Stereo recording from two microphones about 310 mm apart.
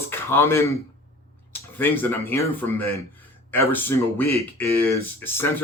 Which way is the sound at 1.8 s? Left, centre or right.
Centre.